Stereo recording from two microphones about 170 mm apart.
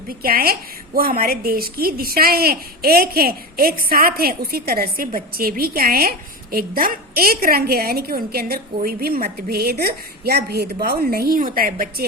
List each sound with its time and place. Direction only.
0.1 s a woman's voice: 60° right (ahead or behind)